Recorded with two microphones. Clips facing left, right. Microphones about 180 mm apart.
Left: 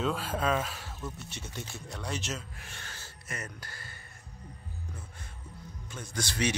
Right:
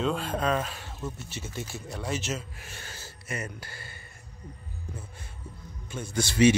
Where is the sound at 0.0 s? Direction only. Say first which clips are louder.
Right 3 dB; 5° left (ahead or behind).